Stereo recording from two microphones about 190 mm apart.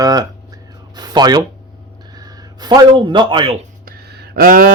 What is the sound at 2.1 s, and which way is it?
A man's voice, 20° right (ahead or behind).